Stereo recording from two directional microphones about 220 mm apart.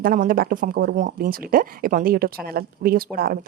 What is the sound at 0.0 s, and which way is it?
Speech, 40° right (ahead or behind).